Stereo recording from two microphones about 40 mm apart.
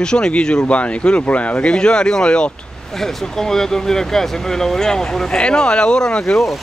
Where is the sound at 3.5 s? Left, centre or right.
Centre.